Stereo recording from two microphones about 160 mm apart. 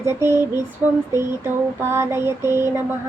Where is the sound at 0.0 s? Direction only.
15° right (ahead or behind).